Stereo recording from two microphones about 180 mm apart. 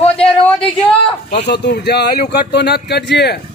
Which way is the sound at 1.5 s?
70° left (ahead or behind).